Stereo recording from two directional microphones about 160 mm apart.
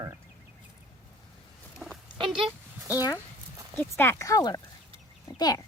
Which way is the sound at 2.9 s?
25° left (ahead or behind).